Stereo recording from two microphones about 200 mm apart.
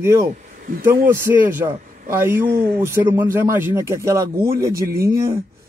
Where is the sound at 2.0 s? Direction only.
45° right (ahead or behind).